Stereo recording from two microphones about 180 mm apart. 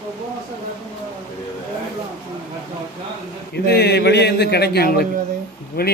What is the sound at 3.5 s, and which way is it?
A man's voice, 65° left (ahead or behind).